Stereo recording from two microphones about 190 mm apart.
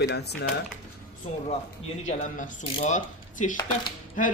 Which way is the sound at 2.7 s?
40° left (ahead or behind).